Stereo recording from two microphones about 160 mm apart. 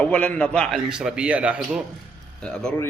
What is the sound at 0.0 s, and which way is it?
Speech, 10° left (ahead or behind).